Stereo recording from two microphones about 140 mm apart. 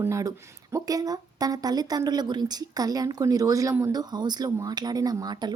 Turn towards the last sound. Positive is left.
turn(degrees=-30)  # may be behind; listen again after turning